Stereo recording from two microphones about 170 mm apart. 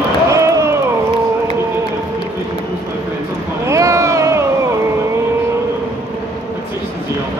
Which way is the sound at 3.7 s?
20° right (ahead or behind).